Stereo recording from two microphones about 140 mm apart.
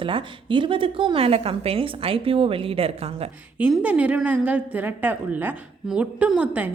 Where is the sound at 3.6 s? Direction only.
5° right (ahead or behind).